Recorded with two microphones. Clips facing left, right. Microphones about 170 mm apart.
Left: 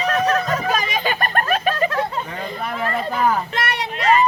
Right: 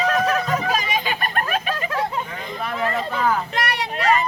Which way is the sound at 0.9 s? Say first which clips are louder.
Left 2 dB; 50° left (ahead or behind).